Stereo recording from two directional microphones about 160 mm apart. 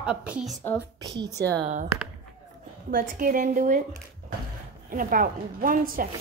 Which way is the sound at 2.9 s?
60° right (ahead or behind).